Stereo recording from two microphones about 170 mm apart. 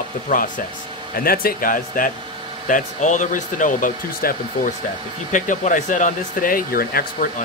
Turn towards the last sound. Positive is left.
turn(degrees=55)  # may be behind; listen again after turning